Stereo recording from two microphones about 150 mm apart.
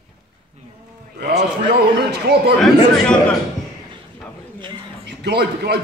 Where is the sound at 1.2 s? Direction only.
90° right.